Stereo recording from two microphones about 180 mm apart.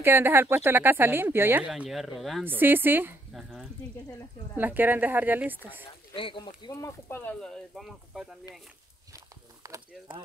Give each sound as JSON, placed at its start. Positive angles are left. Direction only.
{"t": 0.0, "sound": "speech", "side_deg": -10}
{"t": 1.7, "sound": "speech", "side_deg": 0}
{"t": 2.4, "sound": "speech", "side_deg": -10}
{"t": 4.6, "sound": "speech", "side_deg": -10}
{"t": 6.1, "sound": "speech", "side_deg": 30}
{"t": 9.1, "sound": "a sound", "side_deg": -15}